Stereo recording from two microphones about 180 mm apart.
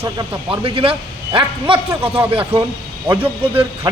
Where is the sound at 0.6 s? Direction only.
30° right (ahead or behind).